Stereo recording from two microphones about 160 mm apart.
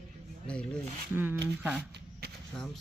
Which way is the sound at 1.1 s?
15° right (ahead or behind).